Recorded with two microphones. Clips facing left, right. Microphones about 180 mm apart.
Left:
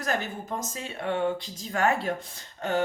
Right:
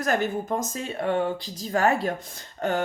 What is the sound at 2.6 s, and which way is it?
Beatboxing, 45° right (ahead or behind).